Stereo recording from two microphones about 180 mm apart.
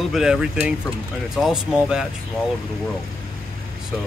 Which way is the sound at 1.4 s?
5° right (ahead or behind).